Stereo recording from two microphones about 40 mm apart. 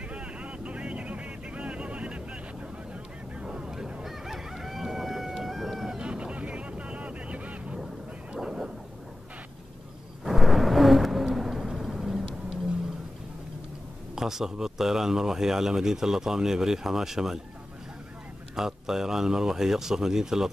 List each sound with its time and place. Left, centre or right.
0.1 s vehicle: right
3.3 s crowing: right; by 5.9 s centre
5.9 s vehicle: right
8.4 s thunder: centre
10.2 s vehicle: centre
14.1 s speech: centre
18.6 s speech: centre